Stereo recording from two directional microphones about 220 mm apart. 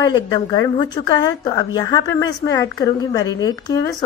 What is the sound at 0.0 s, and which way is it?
Speech, 15° left (ahead or behind).